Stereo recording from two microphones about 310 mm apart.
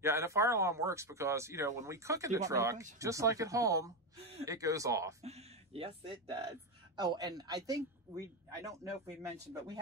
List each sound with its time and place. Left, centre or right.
0.0 s speech: centre